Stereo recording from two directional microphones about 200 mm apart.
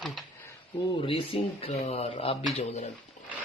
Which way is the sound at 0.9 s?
25° left (ahead or behind).